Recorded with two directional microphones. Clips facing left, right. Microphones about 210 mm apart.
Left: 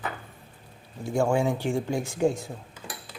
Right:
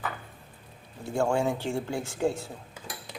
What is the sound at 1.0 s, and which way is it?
Speech, 10° left (ahead or behind).